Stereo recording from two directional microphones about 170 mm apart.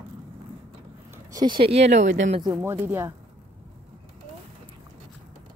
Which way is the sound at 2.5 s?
15° right (ahead or behind).